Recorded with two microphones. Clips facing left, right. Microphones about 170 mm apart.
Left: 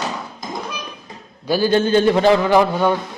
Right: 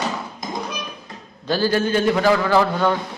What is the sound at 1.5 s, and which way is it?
Speech, 15° left (ahead or behind).